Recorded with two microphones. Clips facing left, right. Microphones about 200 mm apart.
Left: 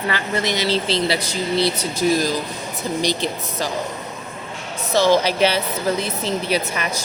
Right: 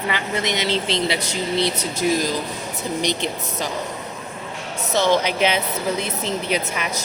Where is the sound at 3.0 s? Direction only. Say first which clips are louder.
Left 2 dB; 20° right (ahead or behind).